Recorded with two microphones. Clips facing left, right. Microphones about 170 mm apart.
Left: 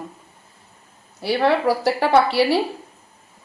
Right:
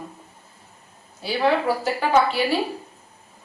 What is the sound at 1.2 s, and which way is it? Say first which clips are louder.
A woman's voice: left 3 dB; 70° left (ahead or behind).